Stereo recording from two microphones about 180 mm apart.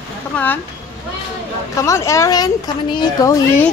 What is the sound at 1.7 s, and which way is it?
A woman's voice, 15° left (ahead or behind).